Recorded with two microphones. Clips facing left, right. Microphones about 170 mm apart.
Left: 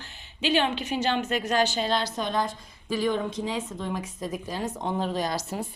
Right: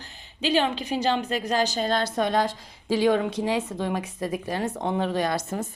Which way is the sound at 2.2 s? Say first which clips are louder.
Right 4 dB; 75° right (ahead or behind).